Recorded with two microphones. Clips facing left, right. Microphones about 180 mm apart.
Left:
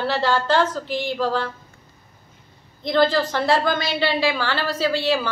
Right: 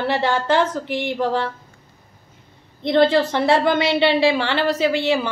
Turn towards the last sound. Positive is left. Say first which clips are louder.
# right 2 dB
turn(degrees=-20)  # may be behind; listen again after turning